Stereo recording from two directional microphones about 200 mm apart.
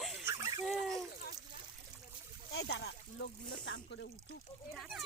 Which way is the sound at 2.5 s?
55° left (ahead or behind).